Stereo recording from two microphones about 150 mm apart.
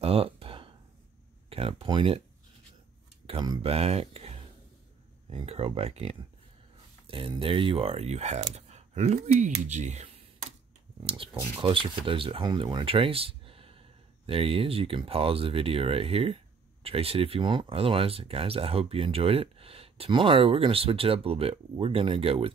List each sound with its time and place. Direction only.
0.0 s a sound: 40° right (ahead or behind)
1.5 s speech: 40° right (ahead or behind)
3.3 s speech: 30° right (ahead or behind)